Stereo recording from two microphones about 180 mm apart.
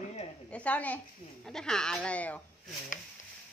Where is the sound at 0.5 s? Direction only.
10° left (ahead or behind).